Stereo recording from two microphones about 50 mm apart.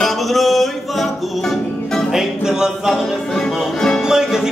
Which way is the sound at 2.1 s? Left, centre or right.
Centre.